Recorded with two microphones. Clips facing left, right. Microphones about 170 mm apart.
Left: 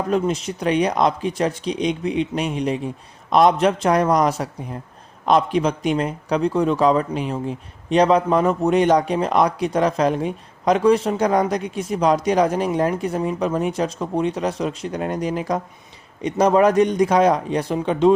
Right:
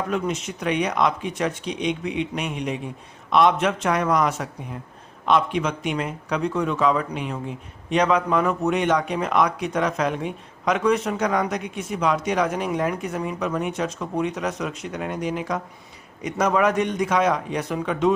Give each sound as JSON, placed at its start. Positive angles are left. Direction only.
{"t": 0.1, "sound": "a man's voice", "side_deg": 35}